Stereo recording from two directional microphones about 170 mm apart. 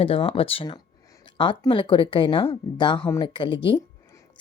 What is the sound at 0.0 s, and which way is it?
Speech, 30° left (ahead or behind).